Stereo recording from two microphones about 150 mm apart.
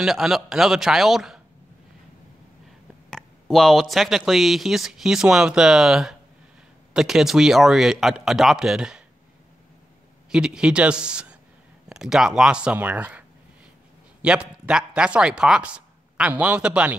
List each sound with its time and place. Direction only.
0.0 s speech: centre (ahead or behind)
3.1 s speech: centre (ahead or behind)
10.3 s speech: 5° right (ahead or behind)
14.2 s speech: 5° right (ahead or behind)